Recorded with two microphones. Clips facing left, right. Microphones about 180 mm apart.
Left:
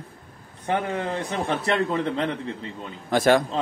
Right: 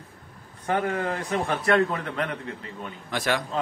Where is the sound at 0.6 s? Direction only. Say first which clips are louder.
Even; 20° left (ahead or behind).